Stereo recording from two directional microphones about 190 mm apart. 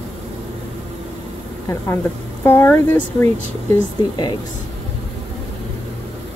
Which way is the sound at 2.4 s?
15° left (ahead or behind).